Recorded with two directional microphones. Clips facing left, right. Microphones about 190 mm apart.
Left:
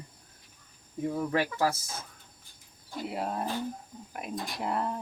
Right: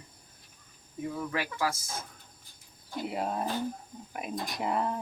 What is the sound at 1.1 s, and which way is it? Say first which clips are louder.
Speech: left 5 dB; 30° left (ahead or behind).